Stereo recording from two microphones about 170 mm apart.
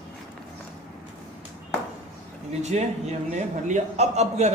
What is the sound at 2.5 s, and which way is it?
A man's voice, 40° right (ahead or behind).